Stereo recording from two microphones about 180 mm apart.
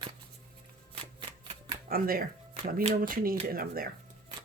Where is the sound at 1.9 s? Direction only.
55° right (ahead or behind).